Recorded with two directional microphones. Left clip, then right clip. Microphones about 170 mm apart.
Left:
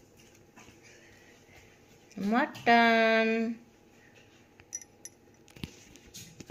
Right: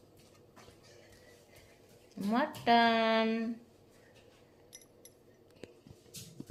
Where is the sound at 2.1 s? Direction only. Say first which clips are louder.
Left 4 dB; 30° left (ahead or behind).